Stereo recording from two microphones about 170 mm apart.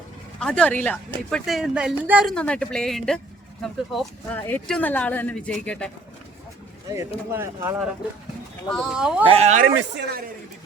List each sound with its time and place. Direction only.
0.3 s speech: 5° left (ahead or behind)
2.3 s speech: 5° left (ahead or behind)
7.3 s speech: 15° right (ahead or behind)
8.7 s speech: 5° right (ahead or behind)
9.2 s speech: 35° right (ahead or behind)
9.6 s speech: 60° right (ahead or behind)